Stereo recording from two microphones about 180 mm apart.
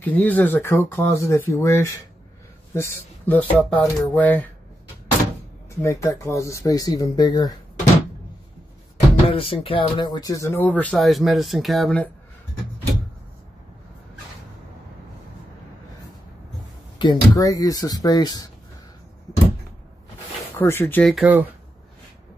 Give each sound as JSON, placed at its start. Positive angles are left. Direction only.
{"t": 0.0, "sound": "a man's voice", "side_deg": 10}
{"t": 5.8, "sound": "speech", "side_deg": 15}
{"t": 9.3, "sound": "speech", "side_deg": 30}
{"t": 17.0, "sound": "speech", "side_deg": 20}
{"t": 20.5, "sound": "speech", "side_deg": 15}
{"t": 21.1, "sound": "speech", "side_deg": -5}